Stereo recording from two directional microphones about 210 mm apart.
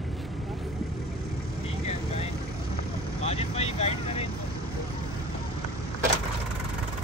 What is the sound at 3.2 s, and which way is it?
Vehicle, 30° left (ahead or behind).